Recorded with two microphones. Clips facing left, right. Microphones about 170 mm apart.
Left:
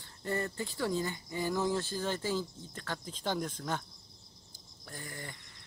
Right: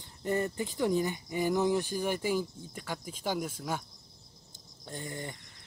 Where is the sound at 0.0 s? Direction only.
20° right (ahead or behind).